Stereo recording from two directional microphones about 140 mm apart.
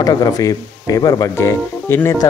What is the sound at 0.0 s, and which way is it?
Speech, 25° left (ahead or behind).